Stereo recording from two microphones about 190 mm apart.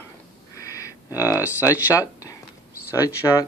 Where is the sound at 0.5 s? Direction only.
15° left (ahead or behind).